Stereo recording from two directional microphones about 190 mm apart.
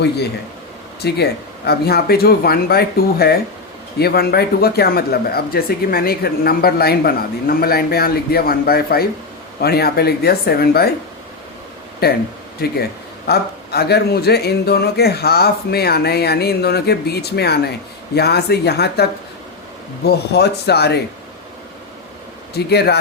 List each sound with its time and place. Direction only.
1.0 s speech: 60° left (ahead or behind)
12.0 s speech: 55° left (ahead or behind)
20.1 s speech: 60° left (ahead or behind)
22.5 s speech: 60° left (ahead or behind)